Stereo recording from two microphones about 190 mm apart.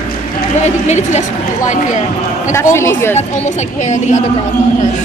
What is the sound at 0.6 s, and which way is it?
A woman's voice, 40° left (ahead or behind).